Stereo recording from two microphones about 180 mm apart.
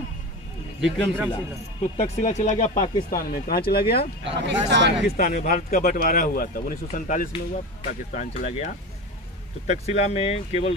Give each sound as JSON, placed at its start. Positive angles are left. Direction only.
{"t": 0.7, "sound": "a man's voice", "side_deg": -5}
{"t": 1.8, "sound": "speech", "side_deg": 40}
{"t": 4.2, "sound": "speech", "side_deg": -80}
{"t": 5.0, "sound": "speech", "side_deg": 55}